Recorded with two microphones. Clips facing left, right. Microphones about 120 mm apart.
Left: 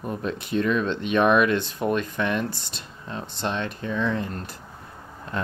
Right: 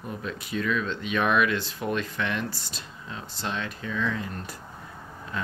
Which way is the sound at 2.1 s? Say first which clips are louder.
Left 4 dB; 20° left (ahead or behind).